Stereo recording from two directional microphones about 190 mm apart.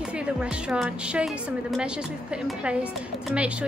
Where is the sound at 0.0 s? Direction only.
5° right (ahead or behind).